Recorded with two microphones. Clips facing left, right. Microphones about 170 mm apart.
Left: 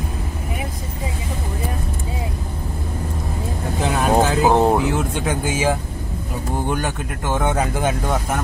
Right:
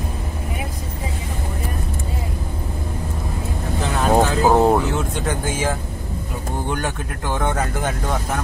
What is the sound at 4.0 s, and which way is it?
Vehicle, 10° left (ahead or behind).